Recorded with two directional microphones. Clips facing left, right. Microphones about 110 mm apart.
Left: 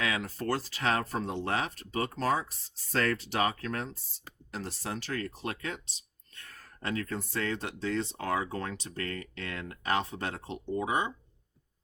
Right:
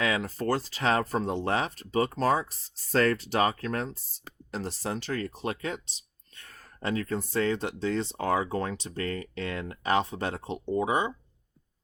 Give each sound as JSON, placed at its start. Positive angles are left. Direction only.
{"t": 0.0, "sound": "speech", "side_deg": -30}